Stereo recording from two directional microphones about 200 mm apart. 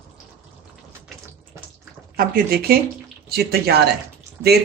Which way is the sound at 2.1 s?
45° right (ahead or behind).